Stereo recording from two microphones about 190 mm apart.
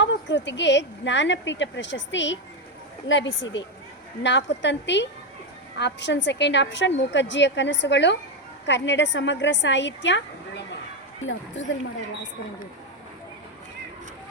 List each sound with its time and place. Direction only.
0.0 s a woman's voice: 75° left (ahead or behind)
11.6 s a woman's voice: 75° left (ahead or behind)